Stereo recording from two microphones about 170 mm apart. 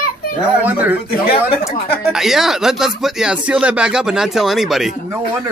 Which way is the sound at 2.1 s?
Centre (ahead or behind).